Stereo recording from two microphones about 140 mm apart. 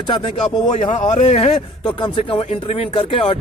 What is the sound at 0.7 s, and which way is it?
Speech, 60° left (ahead or behind).